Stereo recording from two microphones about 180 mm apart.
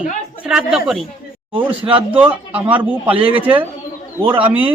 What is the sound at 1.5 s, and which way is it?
Speech, 30° right (ahead or behind).